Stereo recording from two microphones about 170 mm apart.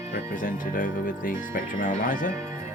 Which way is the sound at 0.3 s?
55° left (ahead or behind).